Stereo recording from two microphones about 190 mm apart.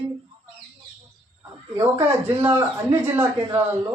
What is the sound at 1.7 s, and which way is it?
Speech, 15° right (ahead or behind).